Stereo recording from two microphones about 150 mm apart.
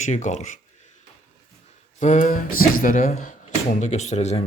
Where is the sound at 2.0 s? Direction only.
55° left (ahead or behind).